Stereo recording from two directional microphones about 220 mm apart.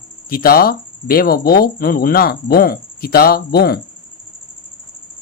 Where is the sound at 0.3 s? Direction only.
40° left (ahead or behind).